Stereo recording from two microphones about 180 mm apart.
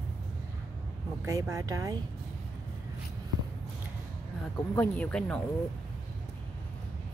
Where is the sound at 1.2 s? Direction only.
20° right (ahead or behind).